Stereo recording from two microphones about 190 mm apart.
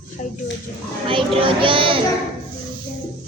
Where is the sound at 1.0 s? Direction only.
25° right (ahead or behind).